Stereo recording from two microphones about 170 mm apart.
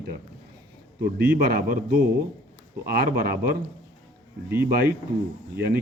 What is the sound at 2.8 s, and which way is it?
Speech, 65° right (ahead or behind).